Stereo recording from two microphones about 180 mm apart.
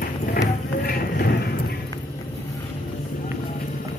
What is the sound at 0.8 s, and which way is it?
Music, 55° left (ahead or behind).